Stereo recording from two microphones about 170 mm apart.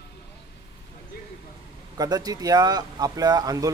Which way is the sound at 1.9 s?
25° right (ahead or behind).